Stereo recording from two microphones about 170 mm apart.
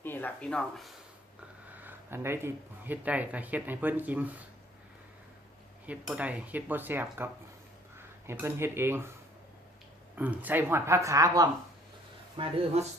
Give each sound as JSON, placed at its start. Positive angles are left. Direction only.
{"t": 0.0, "sound": "speech", "side_deg": 10}
{"t": 1.8, "sound": "speech", "side_deg": -10}
{"t": 5.8, "sound": "speech", "side_deg": -10}
{"t": 10.2, "sound": "speech", "side_deg": -10}
{"t": 12.4, "sound": "speech", "side_deg": -30}